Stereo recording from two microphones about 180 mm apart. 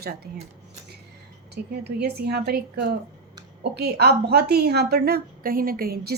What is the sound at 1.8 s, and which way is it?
Speech, 65° right (ahead or behind).